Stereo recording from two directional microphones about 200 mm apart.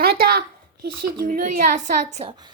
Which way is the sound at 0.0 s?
50° right (ahead or behind).